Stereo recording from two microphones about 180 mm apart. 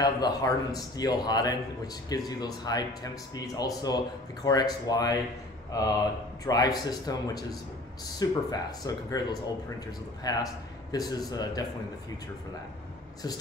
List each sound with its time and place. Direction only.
0.0 s speech: 20° left (ahead or behind)